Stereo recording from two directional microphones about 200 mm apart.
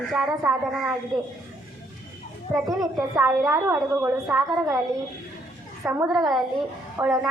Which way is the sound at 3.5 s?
10° right (ahead or behind).